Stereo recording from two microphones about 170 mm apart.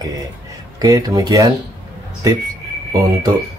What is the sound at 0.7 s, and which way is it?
Speech, 20° right (ahead or behind).